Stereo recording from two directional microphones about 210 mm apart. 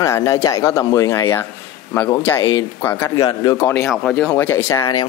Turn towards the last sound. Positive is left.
turn(degrees=15)  # may be behind; listen again after turning